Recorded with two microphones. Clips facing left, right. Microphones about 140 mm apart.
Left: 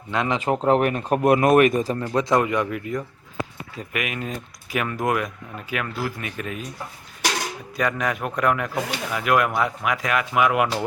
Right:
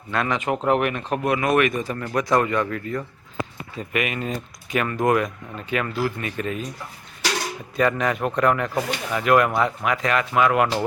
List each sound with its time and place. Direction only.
0.1 s speech: 15° left (ahead or behind)
0.3 s speech: 30° left (ahead or behind)
2.0 s speech: 20° left (ahead or behind)
3.8 s speech: centre (ahead or behind)
7.8 s speech: centre (ahead or behind)